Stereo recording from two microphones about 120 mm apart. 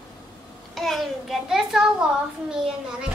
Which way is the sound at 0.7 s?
Centre (ahead or behind).